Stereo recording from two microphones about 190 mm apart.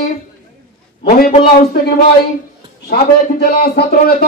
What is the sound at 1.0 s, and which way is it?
Speech, 50° left (ahead or behind).